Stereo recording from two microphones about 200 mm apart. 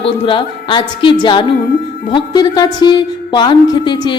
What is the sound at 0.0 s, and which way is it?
Speech, 25° left (ahead or behind).